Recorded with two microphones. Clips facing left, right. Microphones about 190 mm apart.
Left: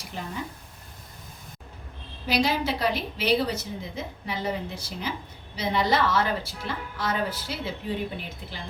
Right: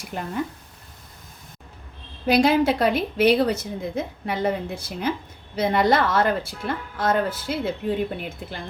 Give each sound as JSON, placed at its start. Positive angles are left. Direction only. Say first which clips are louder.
{"t": 0.1, "sound": "a woman's voice", "louder": "right 7 dB", "side_deg": -55}
{"t": 2.2, "sound": "a woman's voice", "louder": "right 7 dB", "side_deg": -55}